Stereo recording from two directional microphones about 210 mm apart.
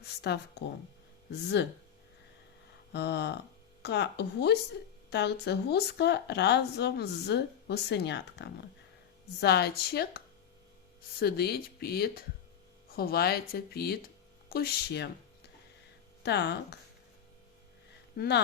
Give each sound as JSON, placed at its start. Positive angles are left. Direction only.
{"t": 0.0, "sound": "a sound", "side_deg": 50}
{"t": 1.3, "sound": "hum", "side_deg": 55}
{"t": 2.9, "sound": "hum", "side_deg": 55}
{"t": 3.8, "sound": "speech", "side_deg": 55}
{"t": 16.2, "sound": "speech", "side_deg": 55}
{"t": 18.2, "sound": "speech", "side_deg": 50}